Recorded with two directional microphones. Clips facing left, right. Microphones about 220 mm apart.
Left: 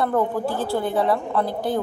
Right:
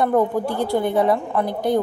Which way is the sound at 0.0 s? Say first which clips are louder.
Right 3 dB; 20° right (ahead or behind).